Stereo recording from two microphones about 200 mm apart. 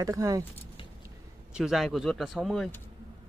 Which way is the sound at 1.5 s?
Centre (ahead or behind).